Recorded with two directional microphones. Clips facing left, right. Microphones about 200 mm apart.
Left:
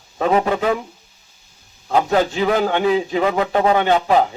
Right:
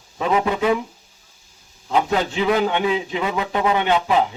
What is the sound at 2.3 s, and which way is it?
A man's voice, 40° left (ahead or behind).